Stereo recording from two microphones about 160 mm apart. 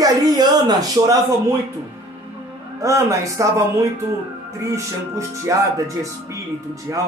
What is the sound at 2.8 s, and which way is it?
A man's voice, 20° right (ahead or behind).